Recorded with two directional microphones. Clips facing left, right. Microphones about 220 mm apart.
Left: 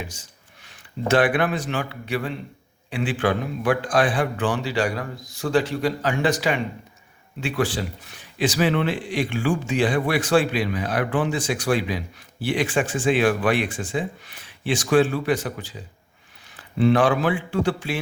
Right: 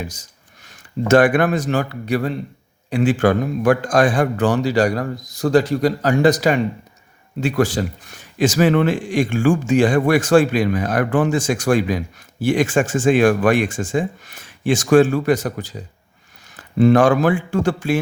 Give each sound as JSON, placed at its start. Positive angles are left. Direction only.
{"t": 0.0, "sound": "a man's voice", "side_deg": -40}